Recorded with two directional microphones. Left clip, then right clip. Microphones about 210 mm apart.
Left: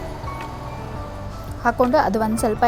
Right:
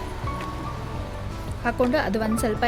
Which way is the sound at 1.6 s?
5° left (ahead or behind).